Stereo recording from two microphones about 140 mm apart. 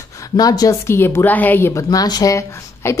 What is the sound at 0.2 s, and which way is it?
A woman's voice, 25° left (ahead or behind).